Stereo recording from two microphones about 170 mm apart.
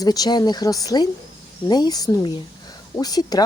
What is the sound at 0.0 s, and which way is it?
Speech, 20° left (ahead or behind).